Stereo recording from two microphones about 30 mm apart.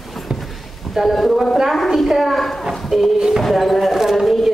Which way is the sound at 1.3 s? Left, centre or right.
Centre.